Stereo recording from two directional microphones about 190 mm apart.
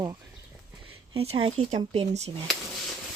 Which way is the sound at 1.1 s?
30° right (ahead or behind).